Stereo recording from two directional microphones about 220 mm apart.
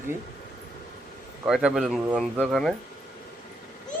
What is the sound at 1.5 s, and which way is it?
Speech, centre (ahead or behind).